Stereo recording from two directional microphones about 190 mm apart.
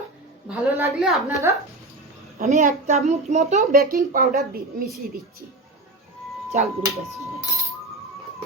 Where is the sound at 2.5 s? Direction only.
40° right (ahead or behind).